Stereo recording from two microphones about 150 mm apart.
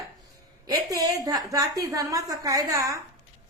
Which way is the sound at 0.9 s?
25° right (ahead or behind).